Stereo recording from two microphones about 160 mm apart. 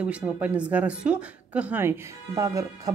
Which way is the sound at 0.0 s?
10° right (ahead or behind).